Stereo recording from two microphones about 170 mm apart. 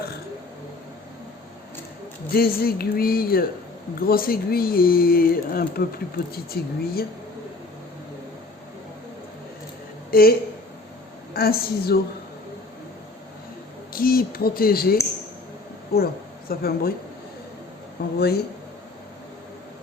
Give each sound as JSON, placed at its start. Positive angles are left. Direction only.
{"t": 2.3, "sound": "speech", "side_deg": 65}
{"t": 10.1, "sound": "speech", "side_deg": 60}
{"t": 11.3, "sound": "speech", "side_deg": 60}
{"t": 13.9, "sound": "speech", "side_deg": 60}
{"t": 18.2, "sound": "speech", "side_deg": 70}